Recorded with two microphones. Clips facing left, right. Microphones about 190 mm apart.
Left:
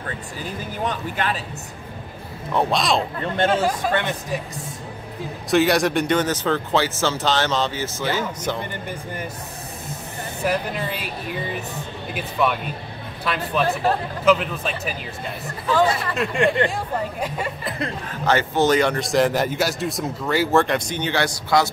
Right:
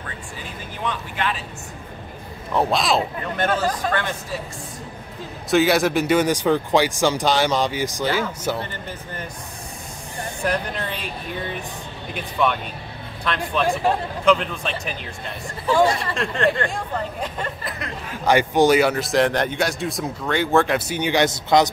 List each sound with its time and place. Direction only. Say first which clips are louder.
0.8 s speech: even; 40° left (ahead or behind)
2.5 s speech: even; centre (ahead or behind)
3.3 s speech: left 2 dB; 30° left (ahead or behind)
5.5 s speech: even; centre (ahead or behind)
10.4 s speech: left 1 dB; 5° left (ahead or behind)
12.1 s speech: even; 5° left (ahead or behind)
16.2 s speech: left 2 dB; 5° left (ahead or behind)
18.2 s speech: right 3 dB; 15° right (ahead or behind)